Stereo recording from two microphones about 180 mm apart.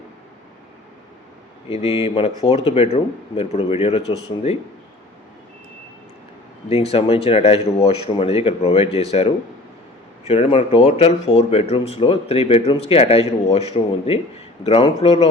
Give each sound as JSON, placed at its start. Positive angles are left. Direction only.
{"t": 1.7, "sound": "speech", "side_deg": 35}
{"t": 6.9, "sound": "speech", "side_deg": 35}